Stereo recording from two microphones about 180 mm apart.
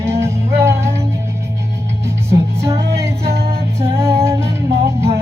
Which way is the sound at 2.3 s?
15° right (ahead or behind).